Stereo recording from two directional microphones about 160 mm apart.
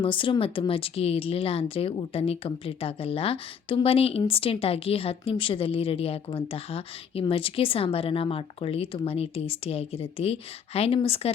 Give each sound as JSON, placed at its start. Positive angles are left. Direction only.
{"t": 0.0, "sound": "a woman's voice", "side_deg": 30}